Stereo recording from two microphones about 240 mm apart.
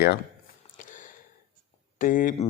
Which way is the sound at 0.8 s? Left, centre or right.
Left.